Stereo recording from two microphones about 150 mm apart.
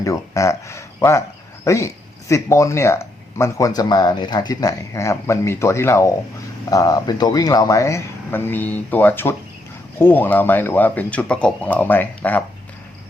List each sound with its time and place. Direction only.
0.0 s speech: 20° left (ahead or behind)